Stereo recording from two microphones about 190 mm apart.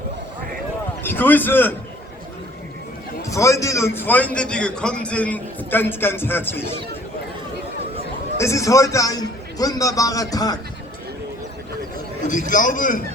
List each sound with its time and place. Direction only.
1.0 s speech: 10° left (ahead or behind)
3.2 s a man's voice: 15° left (ahead or behind)
8.4 s a man's voice: 15° left (ahead or behind)
12.3 s a man's voice: 45° left (ahead or behind)